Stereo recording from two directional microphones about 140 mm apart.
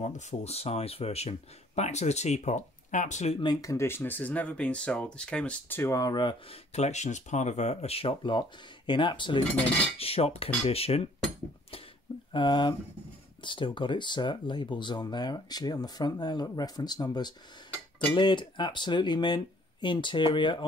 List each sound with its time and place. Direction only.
0.0 s speech: 55° left (ahead or behind)
3.6 s speech: 20° left (ahead or behind)
6.7 s speech: 55° left (ahead or behind)
12.3 s speech: 35° left (ahead or behind)